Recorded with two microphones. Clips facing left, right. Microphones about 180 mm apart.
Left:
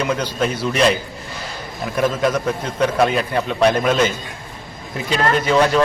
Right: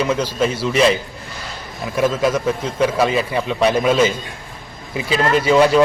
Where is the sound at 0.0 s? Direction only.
5° right (ahead or behind).